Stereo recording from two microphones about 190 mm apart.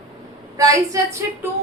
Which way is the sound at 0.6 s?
20° right (ahead or behind).